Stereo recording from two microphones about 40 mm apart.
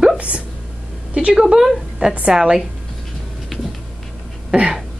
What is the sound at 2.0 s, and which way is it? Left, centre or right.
Speech, right.